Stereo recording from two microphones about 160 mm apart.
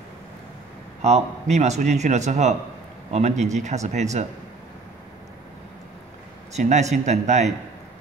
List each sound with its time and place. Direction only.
1.0 s speech: 45° right (ahead or behind)
6.5 s speech: 45° right (ahead or behind)